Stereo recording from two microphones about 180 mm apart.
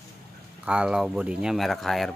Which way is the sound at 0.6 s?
5° right (ahead or behind).